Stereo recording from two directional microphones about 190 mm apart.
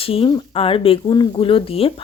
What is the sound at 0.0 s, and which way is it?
Speech, 30° left (ahead or behind).